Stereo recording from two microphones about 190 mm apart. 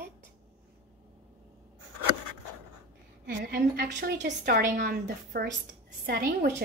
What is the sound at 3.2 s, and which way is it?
Speech, 50° right (ahead or behind).